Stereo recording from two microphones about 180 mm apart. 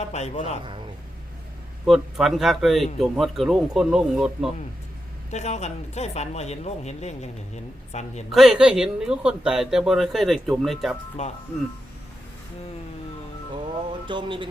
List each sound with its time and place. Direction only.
0.1 s speech: 40° left (ahead or behind)
1.8 s a man's voice: centre (ahead or behind)
5.3 s speech: 40° left (ahead or behind)
8.3 s a man's voice: centre (ahead or behind)
11.2 s speech: 35° left (ahead or behind)
14.1 s speech: 25° right (ahead or behind)